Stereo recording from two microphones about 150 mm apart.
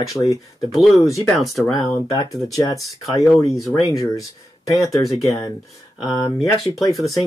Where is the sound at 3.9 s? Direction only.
20° left (ahead or behind).